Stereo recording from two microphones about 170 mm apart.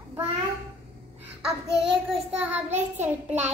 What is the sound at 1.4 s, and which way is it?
A child's voice, 5° right (ahead or behind).